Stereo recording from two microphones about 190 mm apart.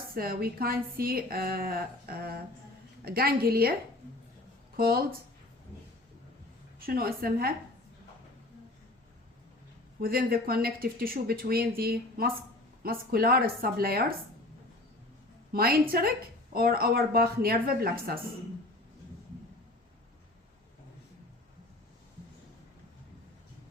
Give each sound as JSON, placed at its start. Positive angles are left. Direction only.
{"t": 0.1, "sound": "speech", "side_deg": -50}
{"t": 4.8, "sound": "speech", "side_deg": -50}
{"t": 6.7, "sound": "a woman's voice", "side_deg": -50}
{"t": 10.0, "sound": "speech", "side_deg": -50}
{"t": 15.5, "sound": "speech", "side_deg": -50}